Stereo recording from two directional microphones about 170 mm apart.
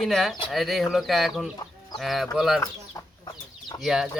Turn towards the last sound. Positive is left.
turn(degrees=0)  # may be behind; listen again after turning